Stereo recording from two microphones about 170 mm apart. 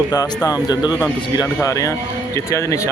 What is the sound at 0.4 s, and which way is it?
Speech, 20° left (ahead or behind).